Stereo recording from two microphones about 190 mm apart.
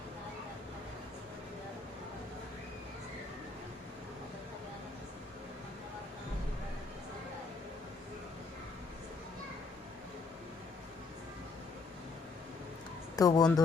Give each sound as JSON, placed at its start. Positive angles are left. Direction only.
{"t": 13.1, "sound": "speech", "side_deg": 20}